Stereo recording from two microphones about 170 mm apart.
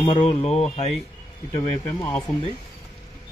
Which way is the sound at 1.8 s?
20° left (ahead or behind).